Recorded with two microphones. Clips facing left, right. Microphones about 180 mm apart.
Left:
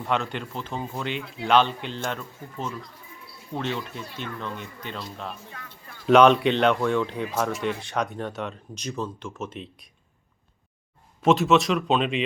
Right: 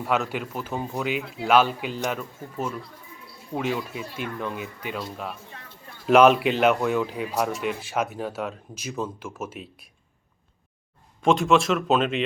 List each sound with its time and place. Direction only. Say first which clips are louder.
0.0 s speech: right 2 dB; 5° right (ahead or behind)
5.5 s a sound: left 2 dB; 30° right (ahead or behind)
6.1 s speech: even; 5° right (ahead or behind)
11.2 s speech: even; centre (ahead or behind)